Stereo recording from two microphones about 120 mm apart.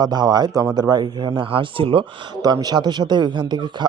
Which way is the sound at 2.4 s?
35° right (ahead or behind).